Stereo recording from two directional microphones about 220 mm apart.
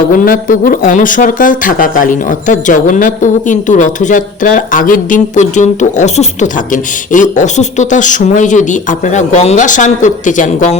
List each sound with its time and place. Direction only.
0.1 s speech: 40° left (ahead or behind)